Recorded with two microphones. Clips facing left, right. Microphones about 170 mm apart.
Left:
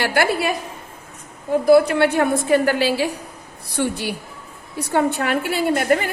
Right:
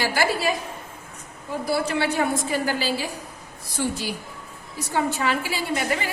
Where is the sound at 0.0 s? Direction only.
60° left (ahead or behind).